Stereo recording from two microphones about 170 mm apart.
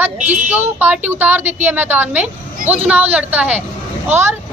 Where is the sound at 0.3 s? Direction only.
10° right (ahead or behind).